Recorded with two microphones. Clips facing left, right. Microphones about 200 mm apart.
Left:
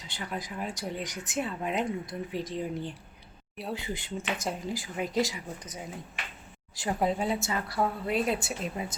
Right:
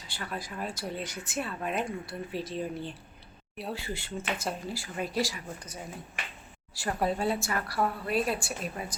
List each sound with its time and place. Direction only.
0.1 s a woman's voice: 20° left (ahead or behind)